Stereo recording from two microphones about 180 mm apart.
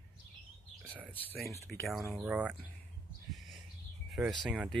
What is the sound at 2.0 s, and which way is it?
Speech, 15° right (ahead or behind).